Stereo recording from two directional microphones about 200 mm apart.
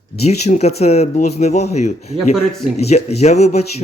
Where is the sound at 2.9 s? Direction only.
30° left (ahead or behind).